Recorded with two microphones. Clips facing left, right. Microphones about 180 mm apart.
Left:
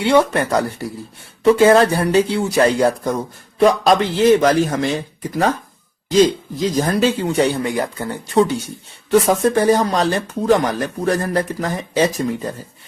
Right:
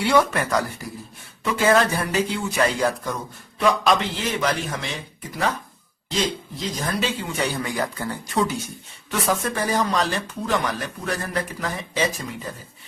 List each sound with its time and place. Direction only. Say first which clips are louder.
0.0 s speech: left 5 dB; 25° left (ahead or behind)
7.3 s speech: left 8 dB; 25° left (ahead or behind)